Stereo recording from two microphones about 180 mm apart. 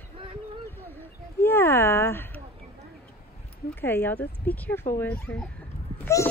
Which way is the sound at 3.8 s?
10° left (ahead or behind).